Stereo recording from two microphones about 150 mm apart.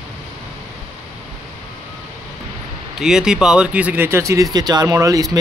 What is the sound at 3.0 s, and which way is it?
Speech, 5° right (ahead or behind).